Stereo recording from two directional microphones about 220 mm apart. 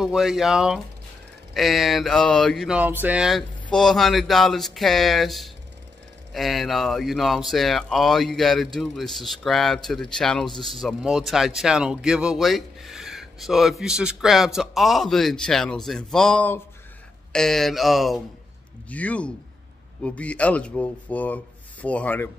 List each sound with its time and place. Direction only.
0.0 s a man's voice: centre (ahead or behind)